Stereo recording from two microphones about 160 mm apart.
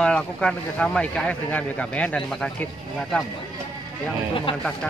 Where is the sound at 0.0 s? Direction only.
5° left (ahead or behind).